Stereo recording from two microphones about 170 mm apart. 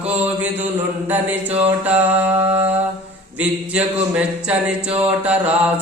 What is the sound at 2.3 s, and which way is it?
Mantra, 35° right (ahead or behind).